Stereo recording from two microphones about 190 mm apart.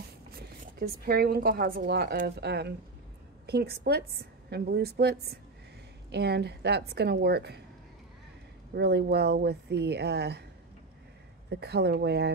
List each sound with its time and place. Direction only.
0.7 s a woman's voice: 55° right (ahead or behind)
8.7 s a woman's voice: 60° right (ahead or behind)
11.5 s a woman's voice: 60° right (ahead or behind)